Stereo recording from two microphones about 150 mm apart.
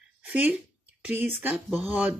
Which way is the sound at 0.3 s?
10° right (ahead or behind).